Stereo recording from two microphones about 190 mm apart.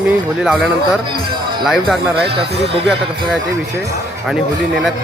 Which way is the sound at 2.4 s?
30° right (ahead or behind).